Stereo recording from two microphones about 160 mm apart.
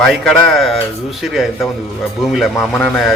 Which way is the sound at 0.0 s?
5° left (ahead or behind).